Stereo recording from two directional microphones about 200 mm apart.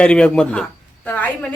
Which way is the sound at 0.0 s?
5° left (ahead or behind).